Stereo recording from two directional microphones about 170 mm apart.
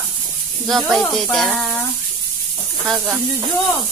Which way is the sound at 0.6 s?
Centre (ahead or behind).